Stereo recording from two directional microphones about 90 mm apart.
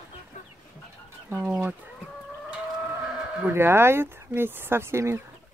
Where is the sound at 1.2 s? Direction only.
15° right (ahead or behind).